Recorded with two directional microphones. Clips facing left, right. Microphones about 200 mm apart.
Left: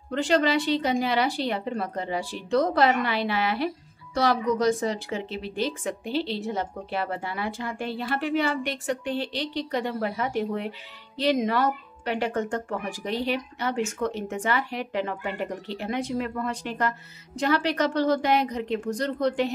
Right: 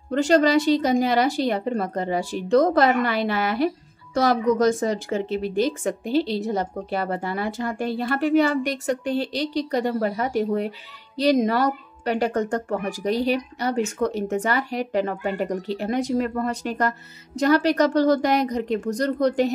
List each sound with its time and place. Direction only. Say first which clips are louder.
0.1 s a woman's voice: right 5 dB; 45° right (ahead or behind)